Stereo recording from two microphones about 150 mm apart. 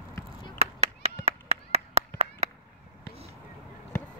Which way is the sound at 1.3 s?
45° right (ahead or behind).